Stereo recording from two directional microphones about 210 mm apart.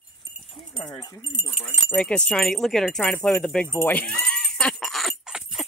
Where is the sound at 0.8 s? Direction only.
20° left (ahead or behind); by 3.6 s 5° left (ahead or behind).